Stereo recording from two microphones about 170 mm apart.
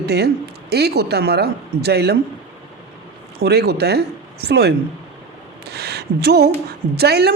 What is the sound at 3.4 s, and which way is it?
A woman's voice, 70° right (ahead or behind).